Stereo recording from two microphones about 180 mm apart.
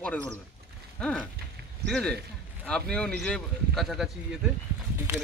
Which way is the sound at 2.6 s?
5° left (ahead or behind).